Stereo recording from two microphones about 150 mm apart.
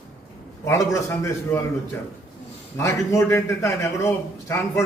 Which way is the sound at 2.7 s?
15° left (ahead or behind).